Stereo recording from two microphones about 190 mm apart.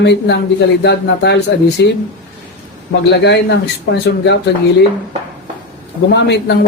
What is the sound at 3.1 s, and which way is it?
A man's voice, 65° left (ahead or behind).